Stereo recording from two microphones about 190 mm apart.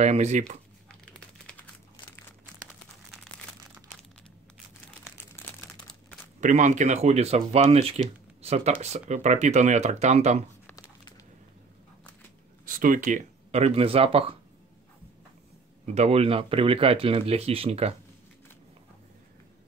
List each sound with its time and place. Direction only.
0.0 s speech: 35° right (ahead or behind)
6.4 s speech: 40° right (ahead or behind)
10.7 s a sound: 20° left (ahead or behind)
12.6 s speech: 45° right (ahead or behind); by 14.2 s 30° right (ahead or behind)
15.8 s speech: 35° right (ahead or behind)